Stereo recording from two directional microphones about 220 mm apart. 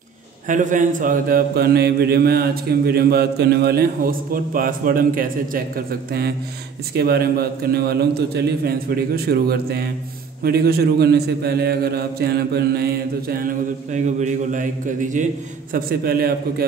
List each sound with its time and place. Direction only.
0.5 s mantra: 35° right (ahead or behind)
13.9 s a man's voice: 35° right (ahead or behind)
15.7 s mantra: 45° right (ahead or behind)